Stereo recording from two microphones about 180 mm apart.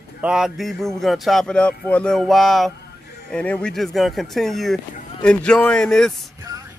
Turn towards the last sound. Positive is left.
turn(degrees=5)  # may be behind; listen again after turning